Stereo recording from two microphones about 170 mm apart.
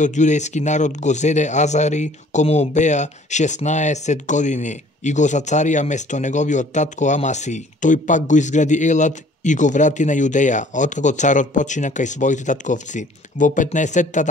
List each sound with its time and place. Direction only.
0.0 s speech: 45° left (ahead or behind)